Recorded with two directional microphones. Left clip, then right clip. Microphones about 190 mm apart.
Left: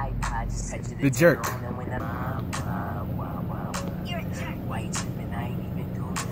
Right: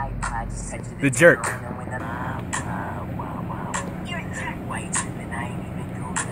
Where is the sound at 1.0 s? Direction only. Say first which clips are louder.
Right 5 dB; 10° right (ahead or behind).